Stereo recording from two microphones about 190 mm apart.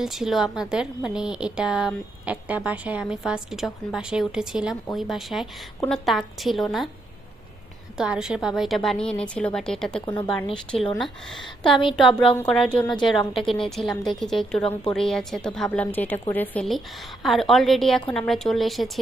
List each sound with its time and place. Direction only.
0.0 s a woman's voice: centre (ahead or behind)
7.9 s a woman's voice: 5° right (ahead or behind)
11.7 s speech: 25° left (ahead or behind)
12.4 s a woman's voice: 5° left (ahead or behind)